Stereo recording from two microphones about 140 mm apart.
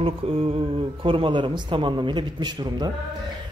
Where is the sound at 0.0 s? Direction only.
45° right (ahead or behind).